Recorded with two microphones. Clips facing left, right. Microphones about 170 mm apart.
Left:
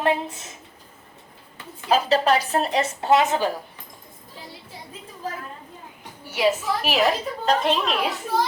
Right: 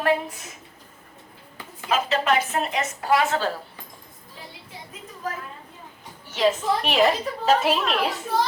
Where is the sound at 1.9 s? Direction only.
35° left (ahead or behind); by 3.5 s 15° left (ahead or behind).